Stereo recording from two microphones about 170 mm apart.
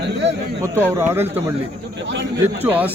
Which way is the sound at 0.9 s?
15° right (ahead or behind).